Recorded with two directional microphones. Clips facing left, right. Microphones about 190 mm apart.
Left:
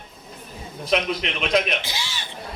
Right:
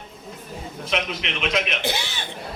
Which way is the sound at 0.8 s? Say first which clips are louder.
Left 4 dB; 40° left (ahead or behind).